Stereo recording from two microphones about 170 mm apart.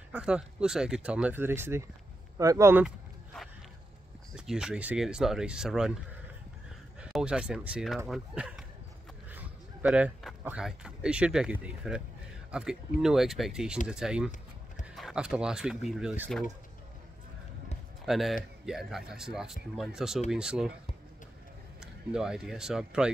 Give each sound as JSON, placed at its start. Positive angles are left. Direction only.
{"t": 0.1, "sound": "speech", "side_deg": -5}
{"t": 4.4, "sound": "speech", "side_deg": -5}
{"t": 7.0, "sound": "speech", "side_deg": -5}
{"t": 18.0, "sound": "speech", "side_deg": 0}
{"t": 21.7, "sound": "speech", "side_deg": -5}